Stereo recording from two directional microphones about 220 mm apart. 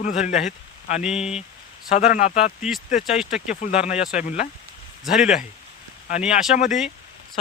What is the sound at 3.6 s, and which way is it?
Speech, 30° left (ahead or behind).